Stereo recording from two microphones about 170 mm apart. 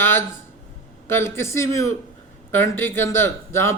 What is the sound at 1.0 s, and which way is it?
Speech, 15° left (ahead or behind).